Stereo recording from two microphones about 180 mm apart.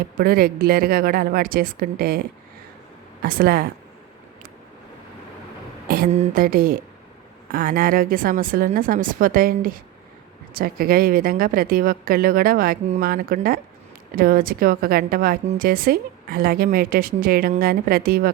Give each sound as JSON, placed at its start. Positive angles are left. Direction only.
{"t": 0.0, "sound": "a woman's voice", "side_deg": -55}
{"t": 3.2, "sound": "a woman's voice", "side_deg": -55}
{"t": 6.1, "sound": "a woman's voice", "side_deg": -40}